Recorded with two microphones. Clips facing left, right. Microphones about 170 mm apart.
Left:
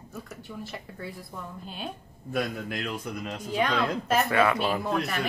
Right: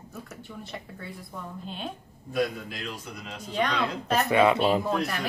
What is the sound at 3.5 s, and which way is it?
Speech, centre (ahead or behind).